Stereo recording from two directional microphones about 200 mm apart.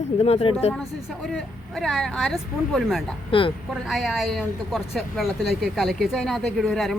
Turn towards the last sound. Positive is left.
turn(degrees=0)  # may be behind; listen again after turning